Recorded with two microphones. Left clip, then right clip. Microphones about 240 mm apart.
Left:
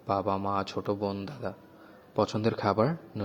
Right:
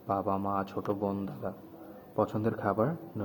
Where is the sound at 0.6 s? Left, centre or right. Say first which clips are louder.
Left 2 dB; left.